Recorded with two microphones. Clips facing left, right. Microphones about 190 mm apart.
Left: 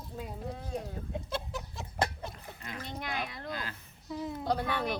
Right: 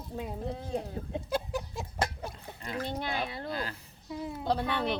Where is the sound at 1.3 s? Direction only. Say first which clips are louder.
Right 8 dB; 15° right (ahead or behind).